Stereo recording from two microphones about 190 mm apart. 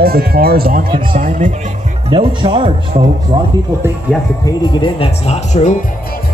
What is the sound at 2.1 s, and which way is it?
Speech, 30° right (ahead or behind).